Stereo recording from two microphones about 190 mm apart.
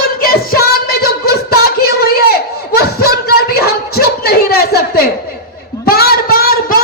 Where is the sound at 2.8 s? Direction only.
55° left (ahead or behind).